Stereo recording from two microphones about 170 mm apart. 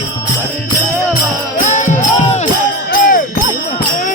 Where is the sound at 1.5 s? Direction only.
45° left (ahead or behind).